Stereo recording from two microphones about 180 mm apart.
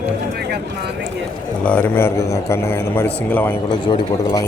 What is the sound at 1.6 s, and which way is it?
Speech, 10° left (ahead or behind).